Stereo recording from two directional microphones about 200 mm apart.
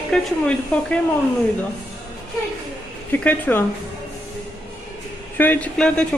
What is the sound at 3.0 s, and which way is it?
Speech, 10° left (ahead or behind).